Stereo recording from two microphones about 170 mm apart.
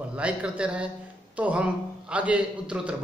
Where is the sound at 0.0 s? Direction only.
5° right (ahead or behind).